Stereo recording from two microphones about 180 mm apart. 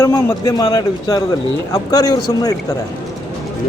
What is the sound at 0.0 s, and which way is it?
A man's voice, 15° left (ahead or behind).